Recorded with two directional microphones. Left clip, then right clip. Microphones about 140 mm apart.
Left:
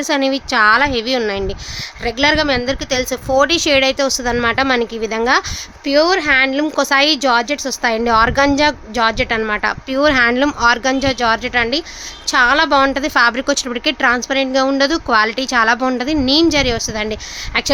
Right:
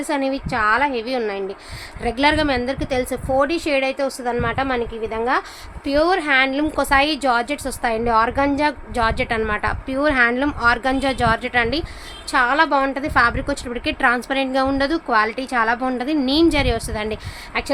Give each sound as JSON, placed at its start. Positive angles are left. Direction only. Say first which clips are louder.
{"t": 0.1, "sound": "a woman's voice", "louder": "left 6 dB", "side_deg": 65}
{"t": 2.0, "sound": "a woman's voice", "louder": "left 3 dB", "side_deg": 45}
{"t": 5.8, "sound": "a woman's voice", "louder": "left 4 dB", "side_deg": 55}
{"t": 12.3, "sound": "a woman's voice", "louder": "left 4 dB", "side_deg": 65}
{"t": 14.3, "sound": "a woman's voice", "louder": "left 4 dB", "side_deg": 35}